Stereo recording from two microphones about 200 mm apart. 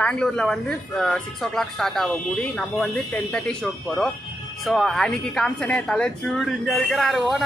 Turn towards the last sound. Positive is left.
turn(degrees=0)  # may be behind; listen again after turning